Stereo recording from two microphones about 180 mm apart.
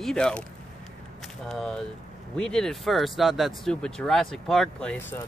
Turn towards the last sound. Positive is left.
turn(degrees=5)  # may be behind; listen again after turning